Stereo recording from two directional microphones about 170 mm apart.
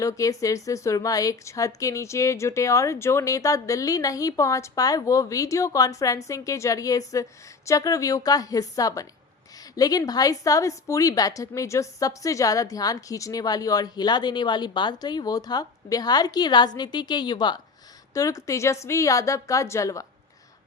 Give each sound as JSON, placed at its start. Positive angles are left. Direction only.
{"t": 0.0, "sound": "speech", "side_deg": 20}